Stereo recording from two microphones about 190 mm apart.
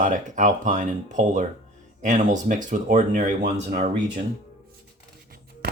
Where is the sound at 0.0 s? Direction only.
40° right (ahead or behind).